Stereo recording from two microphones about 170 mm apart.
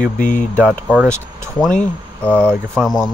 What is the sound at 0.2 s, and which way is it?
Speech, 10° left (ahead or behind).